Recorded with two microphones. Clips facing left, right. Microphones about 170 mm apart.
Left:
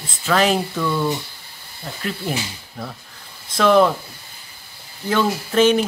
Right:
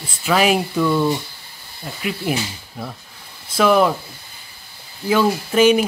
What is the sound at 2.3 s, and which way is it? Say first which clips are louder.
Speech: right 3 dB; 10° right (ahead or behind).